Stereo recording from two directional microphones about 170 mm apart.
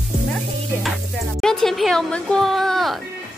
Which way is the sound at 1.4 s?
Centre (ahead or behind).